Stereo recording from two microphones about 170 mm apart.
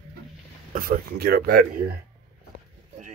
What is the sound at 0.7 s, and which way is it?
Speech, 60° right (ahead or behind).